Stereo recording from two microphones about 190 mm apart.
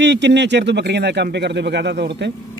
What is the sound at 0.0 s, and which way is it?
Speech, 65° right (ahead or behind).